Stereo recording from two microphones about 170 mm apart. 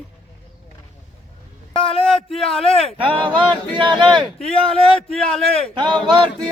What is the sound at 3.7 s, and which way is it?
Speech, 25° right (ahead or behind).